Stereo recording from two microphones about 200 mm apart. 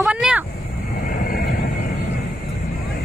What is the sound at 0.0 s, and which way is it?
Vehicle, 5° right (ahead or behind).